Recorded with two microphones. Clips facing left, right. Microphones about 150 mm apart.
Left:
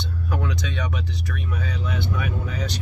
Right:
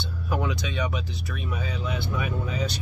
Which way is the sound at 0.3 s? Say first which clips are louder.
Right 1 dB; 10° right (ahead or behind).